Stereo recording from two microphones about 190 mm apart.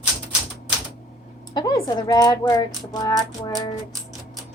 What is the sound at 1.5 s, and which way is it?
A woman's voice, 20° left (ahead or behind).